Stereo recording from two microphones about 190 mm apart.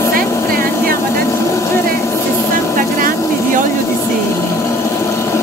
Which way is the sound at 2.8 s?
45° right (ahead or behind).